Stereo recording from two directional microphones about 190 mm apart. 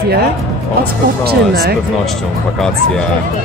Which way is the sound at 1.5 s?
55° right (ahead or behind).